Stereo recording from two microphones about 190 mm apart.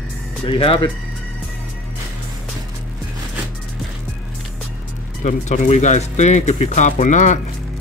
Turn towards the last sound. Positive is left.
turn(degrees=40)  # may be behind; listen again after turning